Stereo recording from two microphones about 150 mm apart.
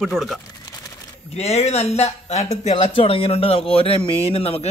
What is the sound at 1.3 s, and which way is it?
Speech, 45° left (ahead or behind).